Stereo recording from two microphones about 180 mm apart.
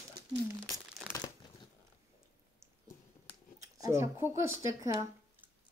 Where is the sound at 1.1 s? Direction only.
20° left (ahead or behind).